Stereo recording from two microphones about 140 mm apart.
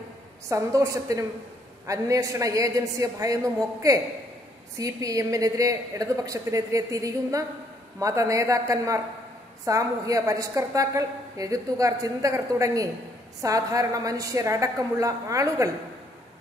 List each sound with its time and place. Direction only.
0.5 s a woman's voice: 20° right (ahead or behind)